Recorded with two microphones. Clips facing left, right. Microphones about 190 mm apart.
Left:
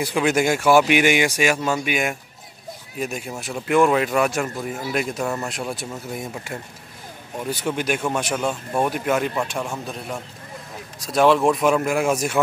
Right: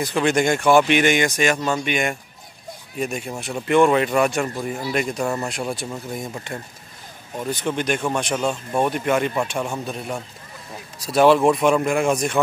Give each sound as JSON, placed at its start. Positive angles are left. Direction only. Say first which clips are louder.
{"t": 0.0, "sound": "speech", "louder": "even", "side_deg": 5}